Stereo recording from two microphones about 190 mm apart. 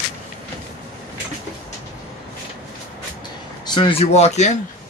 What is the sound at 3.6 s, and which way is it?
Speech, 25° left (ahead or behind).